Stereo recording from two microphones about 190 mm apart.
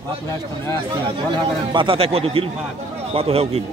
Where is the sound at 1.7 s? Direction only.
25° right (ahead or behind).